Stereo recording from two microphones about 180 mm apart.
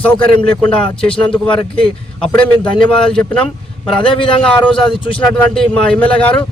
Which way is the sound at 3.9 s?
30° left (ahead or behind).